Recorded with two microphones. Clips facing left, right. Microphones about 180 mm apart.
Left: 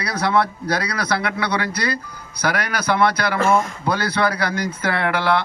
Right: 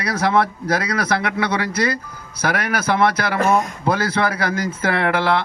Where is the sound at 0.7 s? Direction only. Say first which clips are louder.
Right 2 dB; 25° right (ahead or behind).